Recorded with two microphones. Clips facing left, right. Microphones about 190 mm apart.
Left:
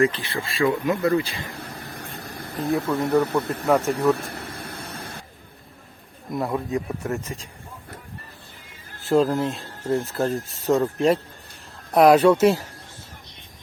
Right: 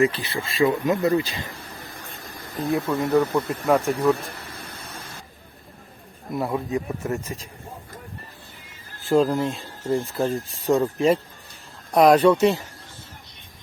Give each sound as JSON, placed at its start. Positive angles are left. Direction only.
{"t": 0.0, "sound": "speech", "side_deg": -10}
{"t": 0.3, "sound": "speech", "side_deg": -20}
{"t": 2.8, "sound": "speech", "side_deg": -10}
{"t": 3.4, "sound": "speech", "side_deg": 65}
{"t": 3.7, "sound": "speech", "side_deg": 0}
{"t": 6.3, "sound": "speech", "side_deg": 0}
{"t": 9.0, "sound": "speech", "side_deg": 0}